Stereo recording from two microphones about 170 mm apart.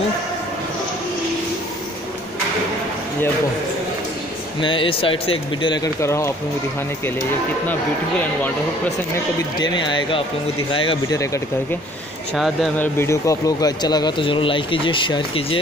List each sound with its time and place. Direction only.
4.6 s speech: 30° left (ahead or behind)
5.9 s speech: 15° left (ahead or behind)
9.6 s speech: 25° left (ahead or behind)
12.4 s speech: centre (ahead or behind)
12.7 s speech: 10° left (ahead or behind); by 15.6 s 30° left (ahead or behind)